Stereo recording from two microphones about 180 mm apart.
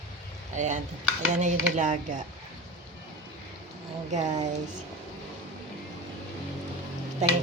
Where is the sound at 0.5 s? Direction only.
40° right (ahead or behind).